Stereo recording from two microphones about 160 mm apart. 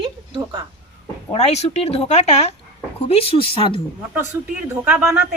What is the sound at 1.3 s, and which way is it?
Speech, 40° left (ahead or behind).